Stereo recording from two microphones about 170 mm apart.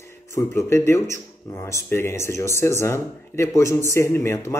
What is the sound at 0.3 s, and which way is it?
Speech, 15° left (ahead or behind).